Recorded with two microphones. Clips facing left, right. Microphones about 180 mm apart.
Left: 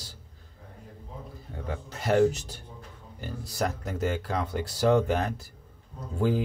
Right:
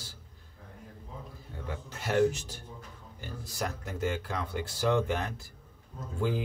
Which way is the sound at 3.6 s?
40° left (ahead or behind).